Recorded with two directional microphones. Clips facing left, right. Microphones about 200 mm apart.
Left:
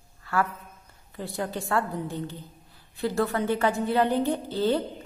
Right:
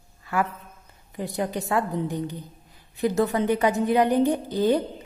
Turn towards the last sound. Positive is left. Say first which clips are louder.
# right 3 dB
turn(degrees=-15)  # may be behind; listen again after turning